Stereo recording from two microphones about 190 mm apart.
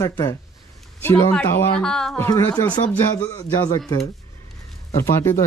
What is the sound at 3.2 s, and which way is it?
Speech, 20° left (ahead or behind).